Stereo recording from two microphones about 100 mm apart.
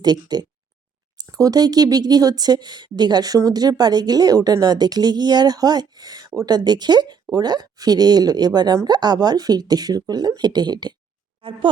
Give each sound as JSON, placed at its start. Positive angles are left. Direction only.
{"t": 0.0, "sound": "speech", "side_deg": -45}
{"t": 11.4, "sound": "speech", "side_deg": -65}